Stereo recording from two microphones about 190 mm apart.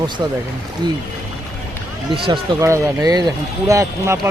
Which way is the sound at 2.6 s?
15° right (ahead or behind).